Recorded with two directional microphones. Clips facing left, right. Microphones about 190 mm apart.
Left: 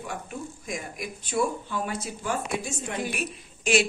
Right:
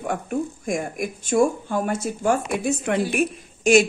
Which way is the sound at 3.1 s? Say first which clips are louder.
Right 10 dB; 50° right (ahead or behind).